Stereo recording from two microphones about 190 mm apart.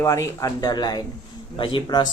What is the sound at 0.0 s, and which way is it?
Speech, 15° left (ahead or behind).